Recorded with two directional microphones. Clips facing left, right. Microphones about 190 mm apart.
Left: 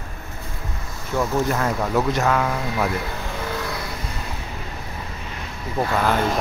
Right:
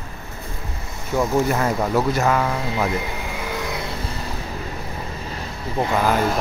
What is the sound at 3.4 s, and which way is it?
Music, 15° right (ahead or behind).